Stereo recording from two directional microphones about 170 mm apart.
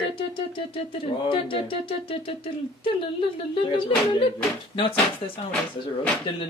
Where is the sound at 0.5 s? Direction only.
30° left (ahead or behind).